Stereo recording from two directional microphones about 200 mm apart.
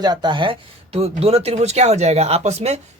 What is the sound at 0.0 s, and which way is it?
Speech, 20° right (ahead or behind).